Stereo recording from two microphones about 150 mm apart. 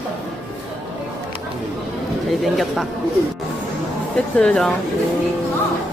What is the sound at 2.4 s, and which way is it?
Speech, centre (ahead or behind).